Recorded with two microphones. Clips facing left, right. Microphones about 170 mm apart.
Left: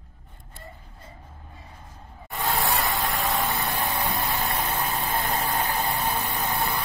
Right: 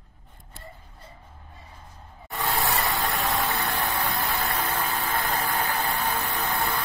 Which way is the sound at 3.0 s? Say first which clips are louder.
Even; 5° left (ahead or behind).